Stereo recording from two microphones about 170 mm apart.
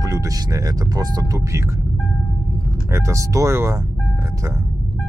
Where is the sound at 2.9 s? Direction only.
15° right (ahead or behind).